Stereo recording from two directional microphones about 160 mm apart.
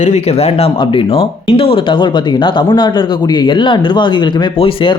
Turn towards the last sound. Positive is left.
turn(degrees=30)  # may be behind; listen again after turning